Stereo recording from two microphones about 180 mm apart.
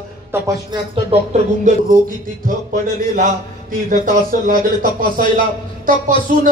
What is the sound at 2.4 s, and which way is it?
Speech, 50° right (ahead or behind).